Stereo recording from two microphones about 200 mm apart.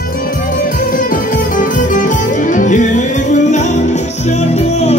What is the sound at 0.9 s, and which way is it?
Music, 45° left (ahead or behind).